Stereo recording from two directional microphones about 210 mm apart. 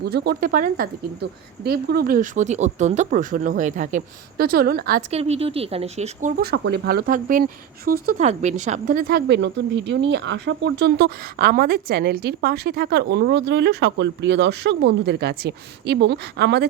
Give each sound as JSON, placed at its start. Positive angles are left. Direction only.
{"t": 0.0, "sound": "speech", "side_deg": -50}
{"t": 5.1, "sound": "speech", "side_deg": -30}
{"t": 6.3, "sound": "speech", "side_deg": -50}